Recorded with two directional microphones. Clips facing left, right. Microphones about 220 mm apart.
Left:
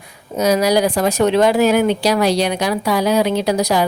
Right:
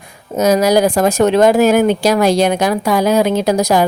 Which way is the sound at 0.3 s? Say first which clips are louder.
Right 3 dB; 45° right (ahead or behind).